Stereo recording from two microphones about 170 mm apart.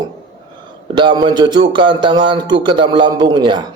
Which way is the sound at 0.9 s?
25° right (ahead or behind).